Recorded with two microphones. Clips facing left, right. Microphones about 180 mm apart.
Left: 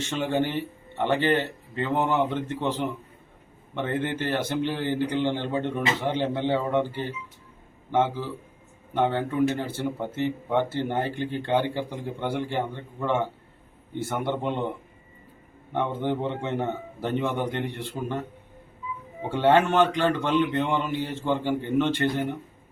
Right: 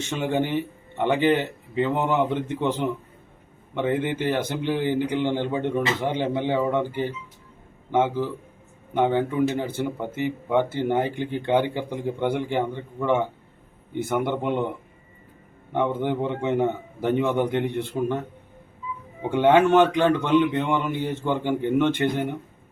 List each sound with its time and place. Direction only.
0.2 s speech: 15° right (ahead or behind)
7.9 s speech: 15° right (ahead or behind)
15.7 s speech: 15° right (ahead or behind)
19.3 s speech: 15° right (ahead or behind)